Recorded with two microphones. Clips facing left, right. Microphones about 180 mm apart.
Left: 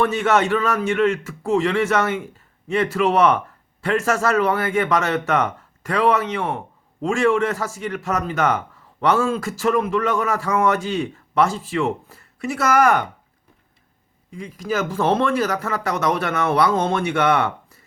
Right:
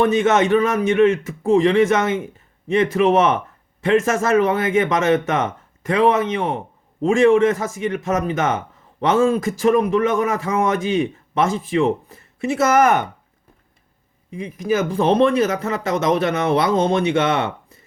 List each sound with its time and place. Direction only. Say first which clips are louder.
0.0 s speech: right 3 dB; 20° right (ahead or behind)
14.3 s speech: right 5 dB; 20° right (ahead or behind)